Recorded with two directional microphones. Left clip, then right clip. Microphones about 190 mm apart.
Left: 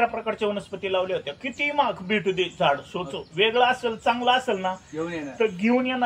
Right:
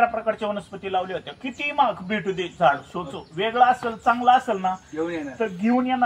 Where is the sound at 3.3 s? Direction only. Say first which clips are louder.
Right 2 dB; 30° left (ahead or behind).